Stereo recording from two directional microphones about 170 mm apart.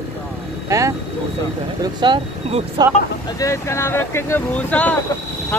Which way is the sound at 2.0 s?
25° right (ahead or behind).